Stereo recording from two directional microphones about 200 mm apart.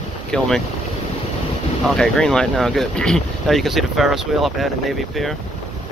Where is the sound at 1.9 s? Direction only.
5° left (ahead or behind).